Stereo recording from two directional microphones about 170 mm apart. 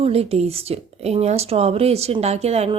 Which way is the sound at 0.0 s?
35° right (ahead or behind).